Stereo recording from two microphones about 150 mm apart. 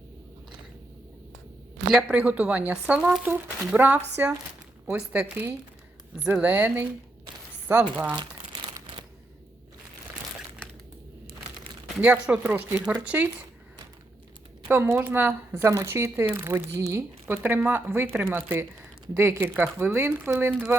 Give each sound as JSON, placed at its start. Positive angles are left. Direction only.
{"t": 1.9, "sound": "speech", "side_deg": -5}
{"t": 12.0, "sound": "speech", "side_deg": -10}
{"t": 14.7, "sound": "speech", "side_deg": -15}